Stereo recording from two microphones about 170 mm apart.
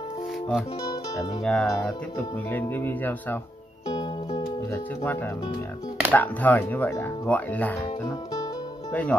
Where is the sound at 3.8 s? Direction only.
20° left (ahead or behind).